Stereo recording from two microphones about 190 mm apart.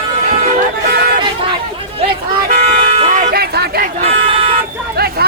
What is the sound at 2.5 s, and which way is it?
Toot, 35° right (ahead or behind).